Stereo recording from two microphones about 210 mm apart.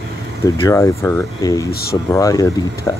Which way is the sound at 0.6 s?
10° left (ahead or behind).